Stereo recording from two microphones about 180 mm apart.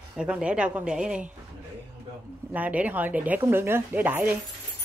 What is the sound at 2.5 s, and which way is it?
Speech, 10° right (ahead or behind).